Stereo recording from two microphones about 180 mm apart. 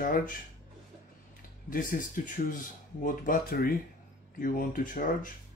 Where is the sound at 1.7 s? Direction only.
50° left (ahead or behind).